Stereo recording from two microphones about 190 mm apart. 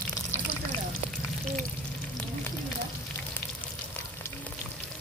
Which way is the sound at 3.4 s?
10° left (ahead or behind).